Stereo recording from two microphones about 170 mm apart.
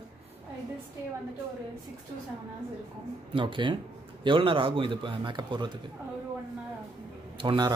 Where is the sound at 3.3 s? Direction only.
30° right (ahead or behind).